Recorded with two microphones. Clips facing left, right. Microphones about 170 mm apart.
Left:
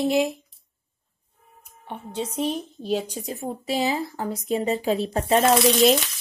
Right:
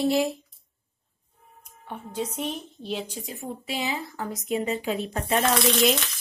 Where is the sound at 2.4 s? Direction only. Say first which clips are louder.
Left 5 dB; 40° left (ahead or behind).